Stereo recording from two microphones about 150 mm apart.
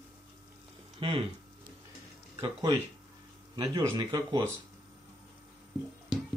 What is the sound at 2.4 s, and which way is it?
Speech, 30° right (ahead or behind).